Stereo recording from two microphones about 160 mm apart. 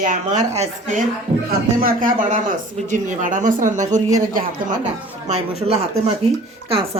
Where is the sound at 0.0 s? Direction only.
55° right (ahead or behind).